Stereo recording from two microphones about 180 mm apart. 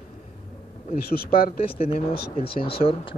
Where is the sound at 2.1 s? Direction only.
65° left (ahead or behind).